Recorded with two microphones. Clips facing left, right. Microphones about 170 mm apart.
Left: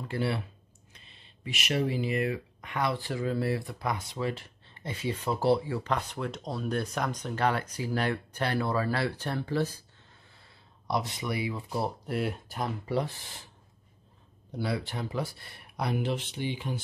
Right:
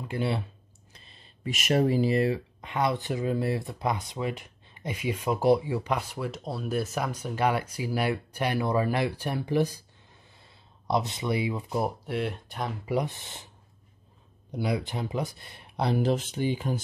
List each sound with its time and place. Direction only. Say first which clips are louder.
0.1 s speech: right 1 dB; 20° right (ahead or behind)
0.9 s speech: right 3 dB; 35° right (ahead or behind); by 11.9 s 20° right (ahead or behind)
12.1 s speech: right 1 dB; centre (ahead or behind)
12.8 s speech: right 5 dB; 15° right (ahead or behind)
14.5 s speech: right 3 dB; 15° right (ahead or behind); by 16.8 s 40° right (ahead or behind)